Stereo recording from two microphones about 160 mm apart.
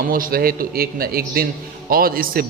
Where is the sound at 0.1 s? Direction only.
65° right (ahead or behind).